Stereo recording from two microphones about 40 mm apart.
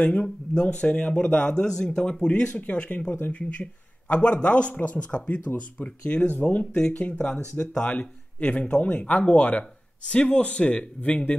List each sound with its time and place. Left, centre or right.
0.0 s a man's voice: left
2.5 s a man's voice: left